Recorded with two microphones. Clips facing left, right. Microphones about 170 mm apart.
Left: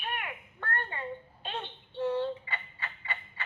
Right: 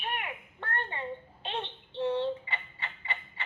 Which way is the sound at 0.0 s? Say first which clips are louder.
Right 1 dB; 25° right (ahead or behind).